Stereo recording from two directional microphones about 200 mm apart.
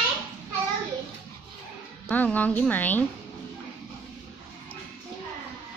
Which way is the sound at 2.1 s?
10° left (ahead or behind).